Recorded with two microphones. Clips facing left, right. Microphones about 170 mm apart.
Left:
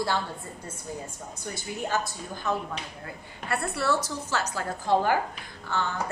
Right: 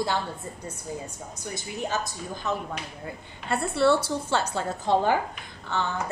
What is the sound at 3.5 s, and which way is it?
A woman's voice, 25° right (ahead or behind).